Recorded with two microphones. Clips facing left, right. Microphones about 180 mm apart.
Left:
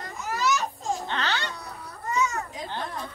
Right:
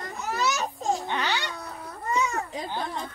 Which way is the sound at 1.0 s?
15° right (ahead or behind).